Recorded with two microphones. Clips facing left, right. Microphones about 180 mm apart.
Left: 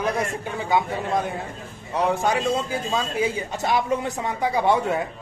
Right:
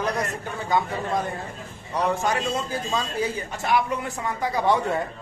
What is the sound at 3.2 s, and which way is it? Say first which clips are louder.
Speech: left 3 dB; 20° left (ahead or behind).